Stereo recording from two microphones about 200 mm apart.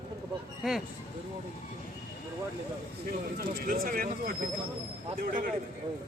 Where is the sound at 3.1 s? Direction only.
45° right (ahead or behind).